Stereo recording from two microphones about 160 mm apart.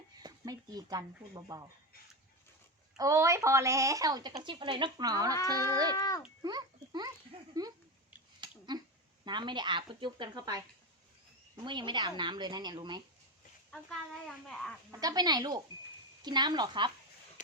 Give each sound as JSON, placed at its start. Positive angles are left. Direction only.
{"t": 0.2, "sound": "speech", "side_deg": -25}
{"t": 3.0, "sound": "speech", "side_deg": -20}
{"t": 5.9, "sound": "a child's voice", "side_deg": 20}
{"t": 6.4, "sound": "a child's voice", "side_deg": -25}
{"t": 7.3, "sound": "speech", "side_deg": -40}
{"t": 8.4, "sound": "a sound", "side_deg": -25}
{"t": 9.2, "sound": "speech", "side_deg": -30}
{"t": 11.6, "sound": "speech", "side_deg": -30}
{"t": 13.7, "sound": "speech", "side_deg": 5}
{"t": 14.8, "sound": "speech", "side_deg": -20}